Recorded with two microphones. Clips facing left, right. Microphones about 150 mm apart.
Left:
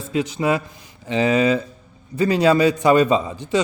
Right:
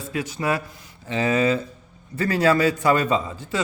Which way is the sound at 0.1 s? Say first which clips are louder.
Left 5 dB; 20° left (ahead or behind).